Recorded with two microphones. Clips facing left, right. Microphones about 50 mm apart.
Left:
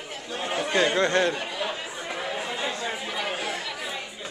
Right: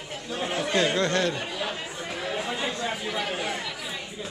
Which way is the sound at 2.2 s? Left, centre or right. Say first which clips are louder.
Right 2 dB; centre.